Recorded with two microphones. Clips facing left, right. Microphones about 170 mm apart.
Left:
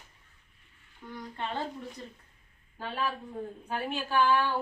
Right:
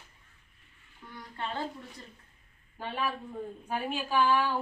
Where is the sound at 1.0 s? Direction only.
20° left (ahead or behind).